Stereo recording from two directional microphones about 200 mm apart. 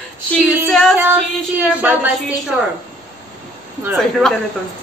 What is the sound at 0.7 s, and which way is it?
Female singing, centre (ahead or behind).